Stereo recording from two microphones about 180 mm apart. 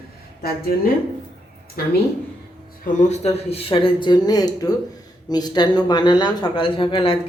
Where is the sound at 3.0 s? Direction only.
35° left (ahead or behind).